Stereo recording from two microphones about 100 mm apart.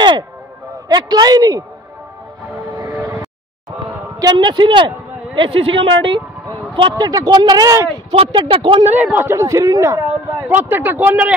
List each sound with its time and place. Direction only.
0.8 s a woman's voice: 45° right (ahead or behind)
2.8 s vehicle: 25° right (ahead or behind)
4.2 s a man's voice: 45° right (ahead or behind)
7.1 s speech: 40° right (ahead or behind)
8.5 s speech: 60° right (ahead or behind)
8.9 s speech: 20° right (ahead or behind); by 10.4 s 35° right (ahead or behind)
10.5 s speech: 20° right (ahead or behind)